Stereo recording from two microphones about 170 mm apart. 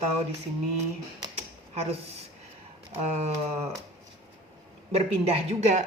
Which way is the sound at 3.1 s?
40° right (ahead or behind).